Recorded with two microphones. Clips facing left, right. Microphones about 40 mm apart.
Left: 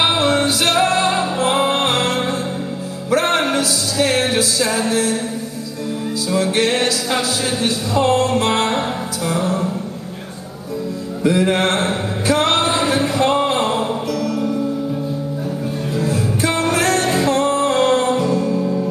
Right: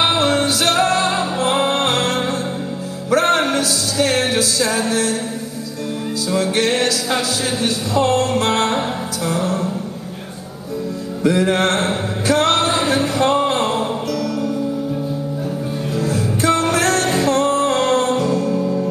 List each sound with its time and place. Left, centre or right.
0.0 s music: centre
3.1 s music: centre
6.5 s speech: centre
8.7 s music: centre
11.2 s speech: centre
12.3 s music: centre
16.0 s music: centre
17.3 s music: centre
18.5 s music: centre